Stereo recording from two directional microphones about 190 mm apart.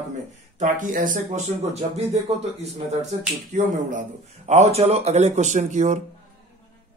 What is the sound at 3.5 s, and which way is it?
A man's voice, 40° right (ahead or behind).